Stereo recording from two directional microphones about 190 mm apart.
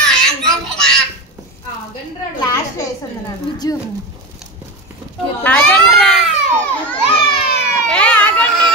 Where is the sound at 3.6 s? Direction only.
20° left (ahead or behind).